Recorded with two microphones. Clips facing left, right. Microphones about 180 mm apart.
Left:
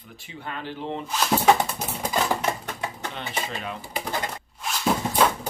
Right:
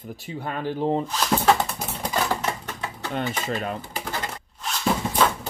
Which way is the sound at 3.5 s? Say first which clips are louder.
Right 5 dB; 45° right (ahead or behind).